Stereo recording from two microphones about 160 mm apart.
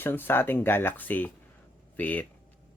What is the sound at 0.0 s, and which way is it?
Speech, 15° left (ahead or behind).